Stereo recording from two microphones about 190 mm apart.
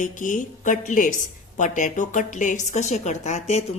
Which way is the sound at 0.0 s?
40° left (ahead or behind).